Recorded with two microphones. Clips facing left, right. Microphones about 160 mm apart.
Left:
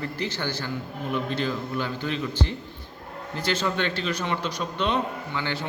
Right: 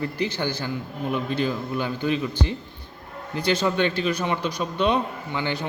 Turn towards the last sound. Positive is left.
turn(degrees=-15)  # may be behind; listen again after turning